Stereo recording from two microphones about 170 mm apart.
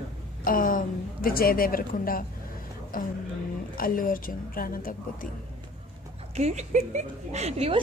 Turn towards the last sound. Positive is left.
turn(degrees=-35)  # may be behind; listen again after turning